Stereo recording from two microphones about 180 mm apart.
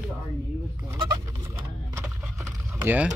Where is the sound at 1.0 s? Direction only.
20° right (ahead or behind).